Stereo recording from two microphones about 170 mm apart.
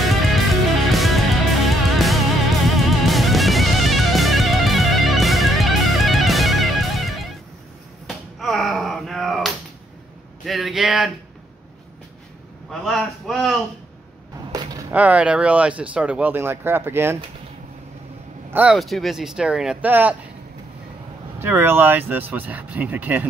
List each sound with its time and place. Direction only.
0.0 s music: centre (ahead or behind)
8.1 s a sound: centre (ahead or behind)
12.8 s speech: centre (ahead or behind)
14.5 s a sound: 20° right (ahead or behind)
14.9 s speech: 10° right (ahead or behind)
18.5 s speech: 5° right (ahead or behind)
21.4 s speech: 15° right (ahead or behind)